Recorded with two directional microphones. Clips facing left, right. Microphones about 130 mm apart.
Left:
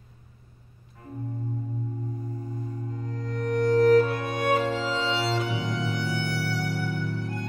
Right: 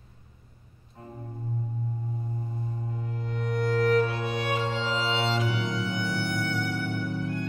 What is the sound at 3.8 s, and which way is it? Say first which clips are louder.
Music: left 4 dB; 45° left (ahead or behind).